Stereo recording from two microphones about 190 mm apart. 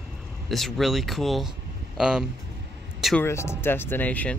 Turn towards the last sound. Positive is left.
turn(degrees=10)  # may be behind; listen again after turning